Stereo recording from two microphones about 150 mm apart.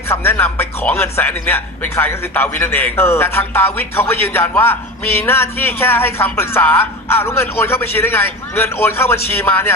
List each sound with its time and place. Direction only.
0.1 s a man's voice: 15° left (ahead or behind)